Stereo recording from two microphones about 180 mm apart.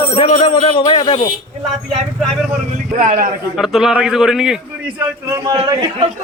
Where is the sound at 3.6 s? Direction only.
Centre (ahead or behind); by 5.5 s 15° right (ahead or behind).